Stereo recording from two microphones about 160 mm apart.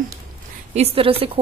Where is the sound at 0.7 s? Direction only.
35° right (ahead or behind).